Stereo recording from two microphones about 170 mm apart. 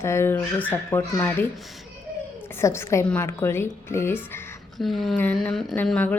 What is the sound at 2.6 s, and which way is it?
Speech, 15° left (ahead or behind).